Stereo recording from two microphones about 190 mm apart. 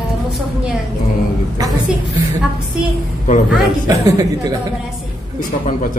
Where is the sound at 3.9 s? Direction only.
20° right (ahead or behind).